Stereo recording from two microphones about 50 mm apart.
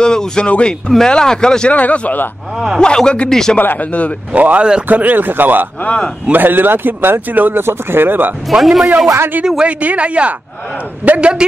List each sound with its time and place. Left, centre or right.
0.0 s speech: centre
1.7 s speech: left
2.8 s speech: centre
3.5 s speech: left
4.3 s speech: right
8.5 s a man's voice: centre
9.6 s speech: right